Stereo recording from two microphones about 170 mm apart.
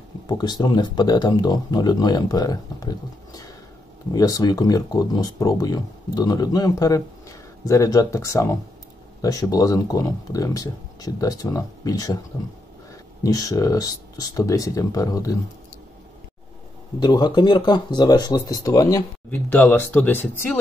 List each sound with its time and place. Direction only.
0.3 s speech: 25° left (ahead or behind)
13.2 s speech: 20° left (ahead or behind)
17.0 s speech: 25° left (ahead or behind)